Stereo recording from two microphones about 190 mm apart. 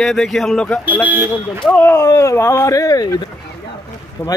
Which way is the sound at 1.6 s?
10° left (ahead or behind).